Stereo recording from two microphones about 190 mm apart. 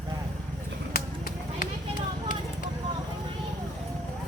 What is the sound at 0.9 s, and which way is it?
Run, 50° left (ahead or behind).